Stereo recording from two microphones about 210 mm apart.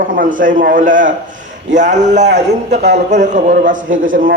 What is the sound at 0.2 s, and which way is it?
A man's voice, 40° right (ahead or behind).